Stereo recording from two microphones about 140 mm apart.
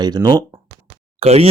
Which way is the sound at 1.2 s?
50° right (ahead or behind).